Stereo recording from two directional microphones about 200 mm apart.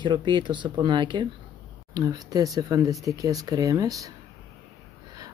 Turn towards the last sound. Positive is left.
turn(degrees=-20)  # may be behind; listen again after turning